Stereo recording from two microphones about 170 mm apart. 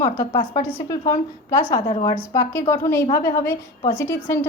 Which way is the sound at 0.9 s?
20° left (ahead or behind).